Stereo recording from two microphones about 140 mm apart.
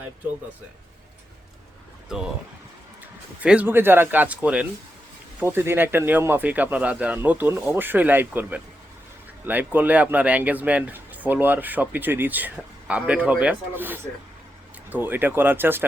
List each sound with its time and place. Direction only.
2.0 s speech: 5° right (ahead or behind)
3.4 s speech: 10° right (ahead or behind)